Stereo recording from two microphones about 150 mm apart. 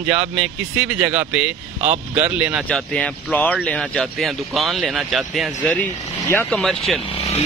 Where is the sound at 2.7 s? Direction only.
5° left (ahead or behind).